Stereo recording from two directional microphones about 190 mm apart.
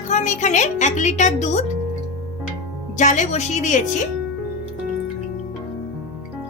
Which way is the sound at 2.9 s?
40° left (ahead or behind).